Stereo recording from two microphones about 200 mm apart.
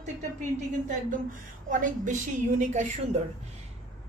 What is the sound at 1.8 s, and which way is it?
A woman's voice, 40° right (ahead or behind).